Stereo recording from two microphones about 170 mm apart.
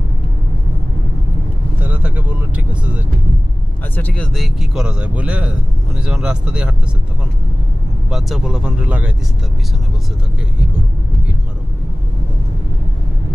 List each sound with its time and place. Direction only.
1.8 s vehicle: 10° right (ahead or behind)
3.9 s a man's voice: 10° left (ahead or behind)
8.1 s a man's voice: 5° right (ahead or behind)